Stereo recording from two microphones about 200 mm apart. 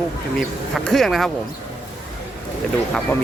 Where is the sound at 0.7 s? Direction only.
Centre (ahead or behind).